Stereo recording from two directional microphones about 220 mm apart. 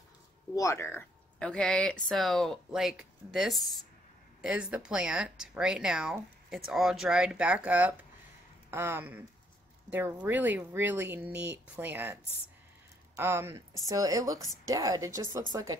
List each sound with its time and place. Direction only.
0.6 s speech: 15° left (ahead or behind); by 15.8 s 15° right (ahead or behind)